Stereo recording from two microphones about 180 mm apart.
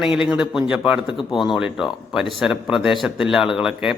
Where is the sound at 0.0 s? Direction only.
5° right (ahead or behind).